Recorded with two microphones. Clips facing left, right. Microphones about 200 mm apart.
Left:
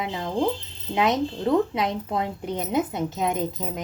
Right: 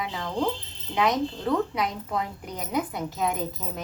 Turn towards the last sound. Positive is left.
turn(degrees=20)  # may be behind; listen again after turning